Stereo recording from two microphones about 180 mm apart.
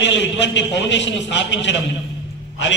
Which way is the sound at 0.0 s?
85° left.